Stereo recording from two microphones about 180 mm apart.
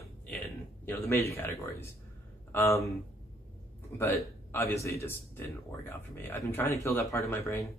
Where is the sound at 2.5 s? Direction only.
15° left (ahead or behind).